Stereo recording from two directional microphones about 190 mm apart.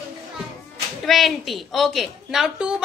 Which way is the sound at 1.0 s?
Centre (ahead or behind).